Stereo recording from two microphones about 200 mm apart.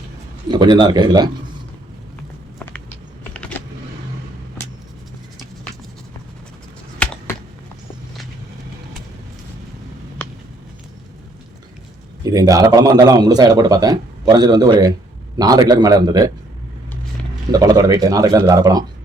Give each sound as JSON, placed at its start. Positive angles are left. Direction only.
{"t": 0.4, "sound": "a man's voice", "side_deg": -20}
{"t": 3.3, "sound": "vehicle", "side_deg": 5}
{"t": 7.0, "sound": "computer keyboard", "side_deg": 5}
{"t": 12.2, "sound": "a man's voice", "side_deg": -15}
{"t": 17.5, "sound": "speech", "side_deg": -20}